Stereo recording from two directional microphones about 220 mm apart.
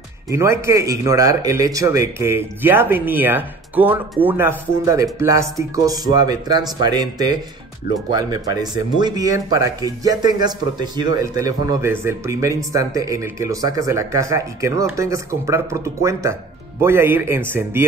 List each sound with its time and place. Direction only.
0.3 s speech: 10° right (ahead or behind)